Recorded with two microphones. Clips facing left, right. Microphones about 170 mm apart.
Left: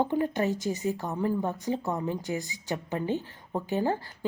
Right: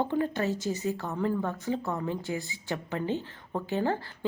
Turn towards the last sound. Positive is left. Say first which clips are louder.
# left 1 dB
turn(degrees=15)  # may be behind; listen again after turning